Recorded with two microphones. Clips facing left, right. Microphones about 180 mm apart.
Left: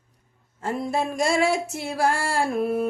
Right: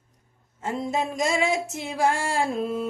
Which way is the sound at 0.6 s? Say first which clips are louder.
Left 1 dB; 20° right (ahead or behind).